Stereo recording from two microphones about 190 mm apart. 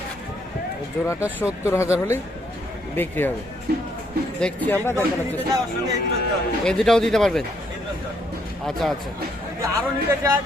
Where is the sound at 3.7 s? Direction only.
55° right (ahead or behind).